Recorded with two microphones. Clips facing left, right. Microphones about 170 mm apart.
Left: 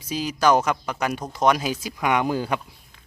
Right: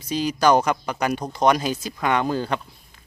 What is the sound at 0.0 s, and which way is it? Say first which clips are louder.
Speech: right 2 dB; 5° left (ahead or behind).